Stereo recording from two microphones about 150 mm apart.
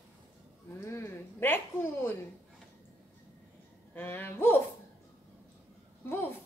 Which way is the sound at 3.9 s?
15° left (ahead or behind).